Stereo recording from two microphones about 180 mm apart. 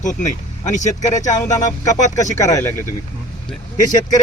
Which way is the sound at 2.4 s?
20° left (ahead or behind).